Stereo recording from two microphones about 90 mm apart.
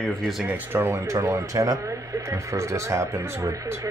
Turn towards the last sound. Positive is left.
turn(degrees=-35)  # may be behind; listen again after turning